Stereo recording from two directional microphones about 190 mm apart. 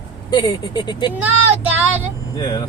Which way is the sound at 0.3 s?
20° left (ahead or behind).